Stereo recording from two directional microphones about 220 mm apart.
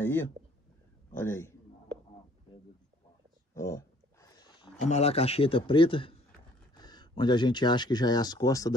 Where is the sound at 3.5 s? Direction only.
15° left (ahead or behind).